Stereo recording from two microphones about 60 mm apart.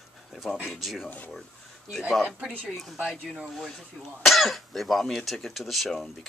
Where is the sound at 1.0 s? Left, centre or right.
Left.